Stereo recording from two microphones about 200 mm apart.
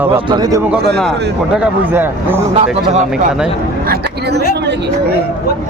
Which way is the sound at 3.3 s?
5° right (ahead or behind).